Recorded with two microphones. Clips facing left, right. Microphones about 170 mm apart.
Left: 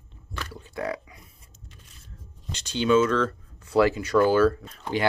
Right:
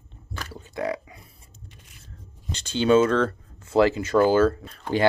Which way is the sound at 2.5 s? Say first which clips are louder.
Right 2 dB; 30° right (ahead or behind).